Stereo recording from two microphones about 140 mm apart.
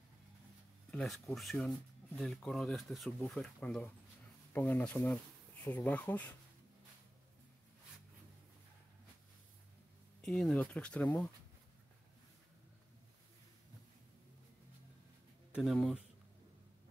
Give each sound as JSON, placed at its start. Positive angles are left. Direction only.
{"t": 0.9, "sound": "speech", "side_deg": 0}
{"t": 10.2, "sound": "speech", "side_deg": 5}
{"t": 15.6, "sound": "speech", "side_deg": 0}